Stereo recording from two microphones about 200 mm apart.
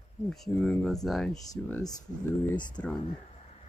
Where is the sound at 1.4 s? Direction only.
20° left (ahead or behind).